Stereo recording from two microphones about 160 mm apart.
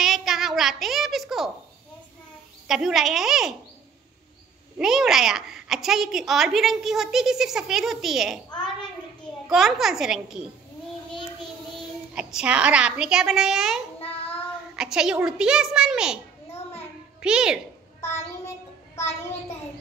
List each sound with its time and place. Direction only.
0.0 s child singing: centre (ahead or behind)
2.7 s a woman's voice: centre (ahead or behind)
4.7 s a woman's voice: 5° right (ahead or behind)
9.5 s a woman's voice: centre (ahead or behind)
12.2 s a woman's voice: 5° right (ahead or behind)
13.9 s child singing: 40° left (ahead or behind)
14.8 s a woman's voice: 5° right (ahead or behind)
17.2 s a child's voice: 5° right (ahead or behind)
18.9 s a child's voice: 45° left (ahead or behind)